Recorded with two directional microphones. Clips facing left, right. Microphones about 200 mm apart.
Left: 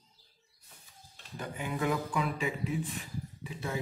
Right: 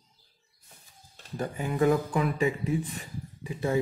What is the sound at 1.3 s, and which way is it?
Speech, 40° right (ahead or behind).